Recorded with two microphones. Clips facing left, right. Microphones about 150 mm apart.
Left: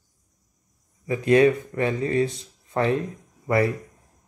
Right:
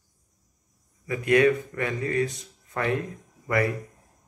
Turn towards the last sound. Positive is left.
turn(degrees=30)  # may be behind; listen again after turning